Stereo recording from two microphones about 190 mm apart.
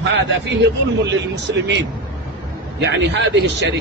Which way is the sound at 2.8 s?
65° right (ahead or behind).